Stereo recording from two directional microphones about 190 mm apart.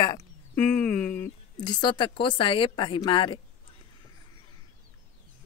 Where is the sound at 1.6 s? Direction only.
25° left (ahead or behind).